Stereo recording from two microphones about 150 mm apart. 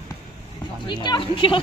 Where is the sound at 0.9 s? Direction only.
30° left (ahead or behind).